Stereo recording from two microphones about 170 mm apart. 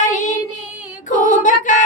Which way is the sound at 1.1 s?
45° left (ahead or behind).